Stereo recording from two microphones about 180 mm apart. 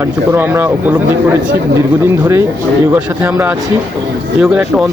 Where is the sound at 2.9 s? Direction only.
10° right (ahead or behind).